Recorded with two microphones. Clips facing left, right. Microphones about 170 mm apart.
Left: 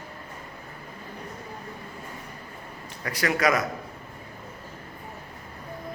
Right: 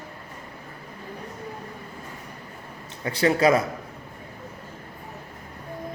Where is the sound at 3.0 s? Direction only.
30° right (ahead or behind).